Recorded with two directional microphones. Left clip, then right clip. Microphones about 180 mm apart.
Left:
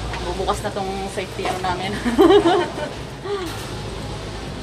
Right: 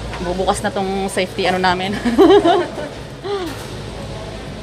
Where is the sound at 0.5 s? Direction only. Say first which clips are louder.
Right 5 dB; 35° right (ahead or behind).